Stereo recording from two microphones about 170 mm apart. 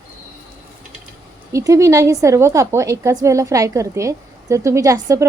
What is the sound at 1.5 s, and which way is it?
A woman's voice, 20° right (ahead or behind).